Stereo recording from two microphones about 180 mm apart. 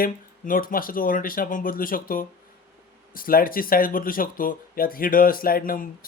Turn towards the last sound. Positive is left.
turn(degrees=50)  # may be behind; listen again after turning